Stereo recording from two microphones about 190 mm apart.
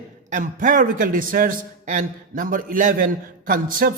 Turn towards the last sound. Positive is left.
turn(degrees=-50)  # may be behind; listen again after turning